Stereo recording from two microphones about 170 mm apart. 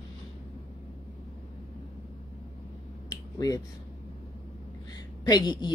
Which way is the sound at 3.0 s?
20° left (ahead or behind).